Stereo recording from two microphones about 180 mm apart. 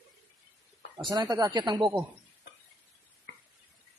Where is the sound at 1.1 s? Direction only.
20° right (ahead or behind).